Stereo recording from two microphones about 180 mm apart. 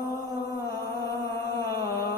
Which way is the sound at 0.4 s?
20° left (ahead or behind).